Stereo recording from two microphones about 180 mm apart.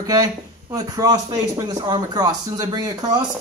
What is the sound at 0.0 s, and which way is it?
Speech, 20° right (ahead or behind).